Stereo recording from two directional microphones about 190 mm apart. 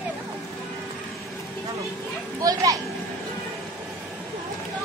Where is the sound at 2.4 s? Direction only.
15° right (ahead or behind).